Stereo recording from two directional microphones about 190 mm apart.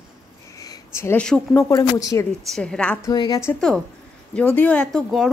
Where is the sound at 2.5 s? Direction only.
5° left (ahead or behind).